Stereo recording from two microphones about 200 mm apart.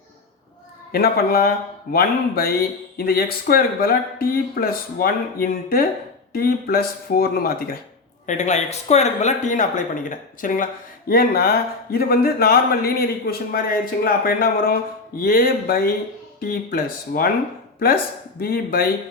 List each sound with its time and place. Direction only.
0.9 s speech: 50° left (ahead or behind)
8.3 s speech: 35° left (ahead or behind)